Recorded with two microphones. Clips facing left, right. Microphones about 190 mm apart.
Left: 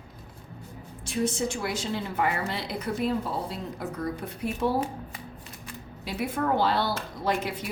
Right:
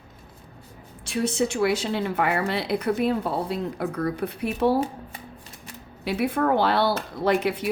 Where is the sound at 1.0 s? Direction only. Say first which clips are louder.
Right 3 dB; 70° right (ahead or behind).